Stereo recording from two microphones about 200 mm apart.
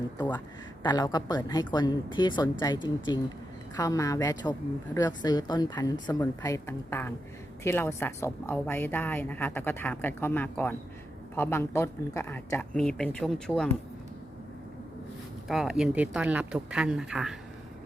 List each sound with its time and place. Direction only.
0.8 s a woman's voice: 20° left (ahead or behind); by 13.7 s centre (ahead or behind)
15.4 s speech: centre (ahead or behind)